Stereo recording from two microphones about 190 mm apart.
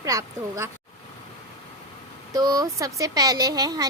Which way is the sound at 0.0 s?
20° right (ahead or behind).